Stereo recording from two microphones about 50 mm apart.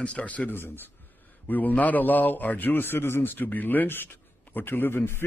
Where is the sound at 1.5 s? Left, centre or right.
Left.